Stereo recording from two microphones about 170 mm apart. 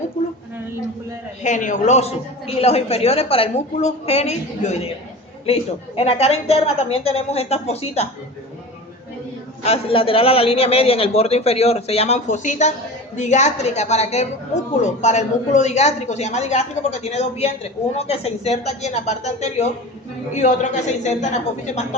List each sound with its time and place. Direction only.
1.4 s a woman's voice: 45° left (ahead or behind)
9.6 s a woman's voice: 35° left (ahead or behind)